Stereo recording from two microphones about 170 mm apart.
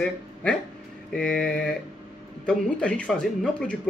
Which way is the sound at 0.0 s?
5° left (ahead or behind).